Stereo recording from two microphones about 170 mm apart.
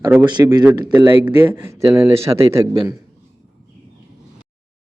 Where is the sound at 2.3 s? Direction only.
25° right (ahead or behind).